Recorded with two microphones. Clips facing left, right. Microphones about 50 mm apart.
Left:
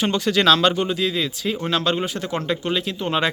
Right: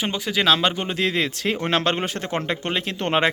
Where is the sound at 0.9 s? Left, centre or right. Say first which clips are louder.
Even; right.